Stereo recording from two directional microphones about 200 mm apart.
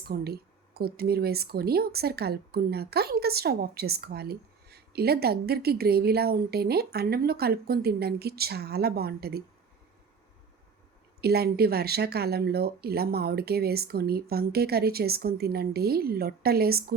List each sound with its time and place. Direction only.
0.0 s speech: 50° right (ahead or behind)
11.2 s speech: 50° right (ahead or behind)